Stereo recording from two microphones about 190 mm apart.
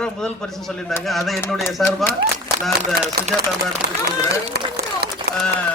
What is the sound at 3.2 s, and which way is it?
Speech, 55° right (ahead or behind).